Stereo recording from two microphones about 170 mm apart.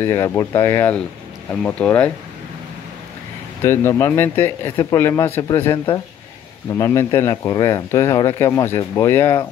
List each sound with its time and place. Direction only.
0.0 s speech: 20° left (ahead or behind)
3.6 s speech: 15° left (ahead or behind)
6.7 s speech: 20° left (ahead or behind)